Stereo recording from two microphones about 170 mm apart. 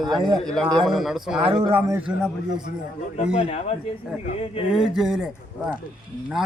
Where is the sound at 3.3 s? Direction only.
40° left (ahead or behind).